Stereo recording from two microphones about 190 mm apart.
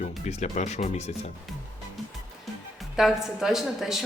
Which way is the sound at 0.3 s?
35° left (ahead or behind).